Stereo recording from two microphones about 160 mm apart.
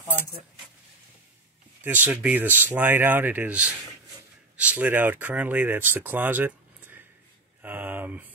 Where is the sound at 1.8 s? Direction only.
10° right (ahead or behind).